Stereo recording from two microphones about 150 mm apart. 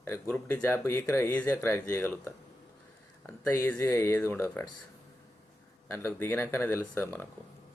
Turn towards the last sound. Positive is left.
turn(degrees=15)  # may be behind; listen again after turning